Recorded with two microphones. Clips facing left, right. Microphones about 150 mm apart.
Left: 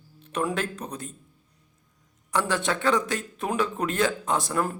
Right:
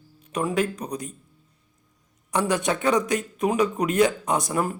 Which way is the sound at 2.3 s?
15° right (ahead or behind).